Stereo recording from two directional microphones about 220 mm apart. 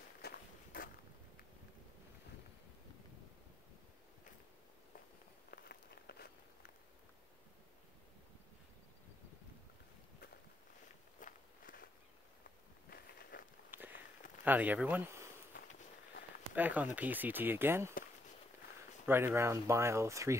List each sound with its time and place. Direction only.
0.2 s walk: 45° left (ahead or behind)
0.7 s a sound: 40° left (ahead or behind)
5.5 s walk: 45° left (ahead or behind)
11.1 s walk: 40° left (ahead or behind)
13.3 s walk: 40° left (ahead or behind)
13.7 s walk: 10° right (ahead or behind)
14.4 s speech: 5° right (ahead or behind)
16.5 s speech: 5° right (ahead or behind)
19.0 s speech: 10° right (ahead or behind)